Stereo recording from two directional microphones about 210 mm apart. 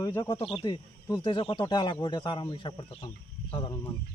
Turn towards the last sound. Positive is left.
turn(degrees=20)  # may be behind; listen again after turning